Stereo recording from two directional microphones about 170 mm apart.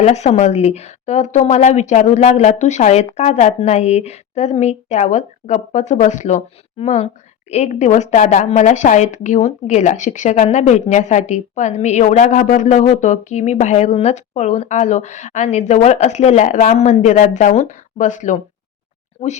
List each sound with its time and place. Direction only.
0.0 s a woman's voice: 40° left (ahead or behind)